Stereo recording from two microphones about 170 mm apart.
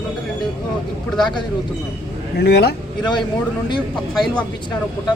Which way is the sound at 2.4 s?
75° left (ahead or behind).